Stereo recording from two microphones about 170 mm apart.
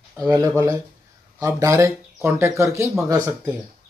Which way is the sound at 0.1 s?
20° right (ahead or behind).